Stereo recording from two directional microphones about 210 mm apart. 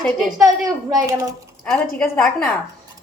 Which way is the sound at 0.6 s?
15° right (ahead or behind).